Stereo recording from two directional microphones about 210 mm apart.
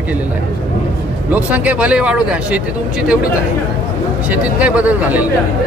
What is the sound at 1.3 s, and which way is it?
Speech, 5° right (ahead or behind).